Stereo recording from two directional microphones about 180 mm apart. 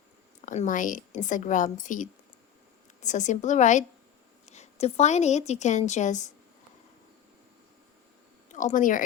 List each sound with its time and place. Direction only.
0.4 s a woman's voice: 45° left (ahead or behind)
8.4 s speech: 45° left (ahead or behind)